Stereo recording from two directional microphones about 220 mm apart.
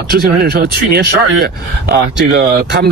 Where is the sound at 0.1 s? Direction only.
45° right (ahead or behind).